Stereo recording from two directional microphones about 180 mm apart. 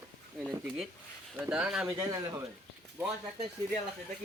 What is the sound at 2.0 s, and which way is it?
A man's voice, 20° right (ahead or behind).